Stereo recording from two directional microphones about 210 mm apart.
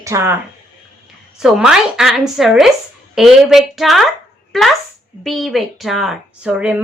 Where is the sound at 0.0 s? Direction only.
15° right (ahead or behind).